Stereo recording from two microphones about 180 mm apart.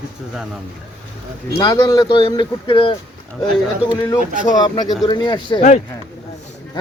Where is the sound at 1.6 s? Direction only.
25° left (ahead or behind).